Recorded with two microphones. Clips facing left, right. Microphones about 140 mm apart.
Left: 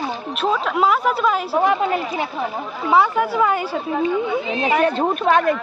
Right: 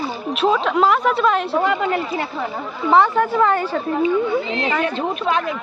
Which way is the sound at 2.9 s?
10° left (ahead or behind).